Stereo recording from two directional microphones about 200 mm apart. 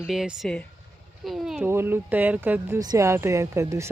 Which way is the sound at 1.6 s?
10° right (ahead or behind).